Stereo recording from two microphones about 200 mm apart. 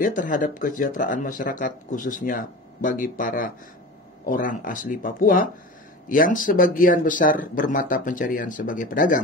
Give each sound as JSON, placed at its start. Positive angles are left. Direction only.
{"t": 0.0, "sound": "speech", "side_deg": 45}